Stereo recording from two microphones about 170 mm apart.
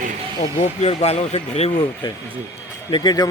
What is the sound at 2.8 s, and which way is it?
Speech, 25° left (ahead or behind).